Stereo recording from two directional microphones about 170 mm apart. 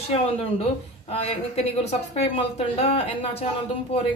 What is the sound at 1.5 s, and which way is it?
A woman's voice, 40° left (ahead or behind).